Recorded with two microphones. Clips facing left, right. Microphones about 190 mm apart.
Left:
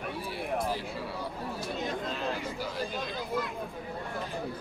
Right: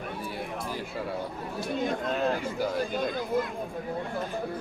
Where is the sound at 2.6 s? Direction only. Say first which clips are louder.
Right 6 dB; 50° right (ahead or behind).